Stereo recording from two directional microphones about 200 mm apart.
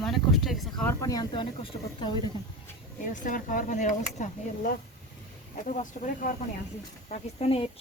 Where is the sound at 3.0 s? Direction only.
40° left (ahead or behind).